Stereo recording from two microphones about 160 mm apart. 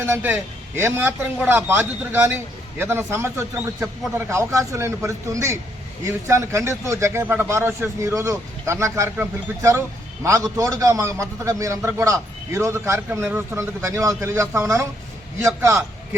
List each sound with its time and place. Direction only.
0.0 s a man's voice: 15° right (ahead or behind)